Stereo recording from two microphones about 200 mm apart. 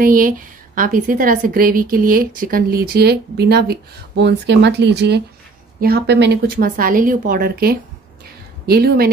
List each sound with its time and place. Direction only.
0.0 s a woman's voice: 45° right (ahead or behind)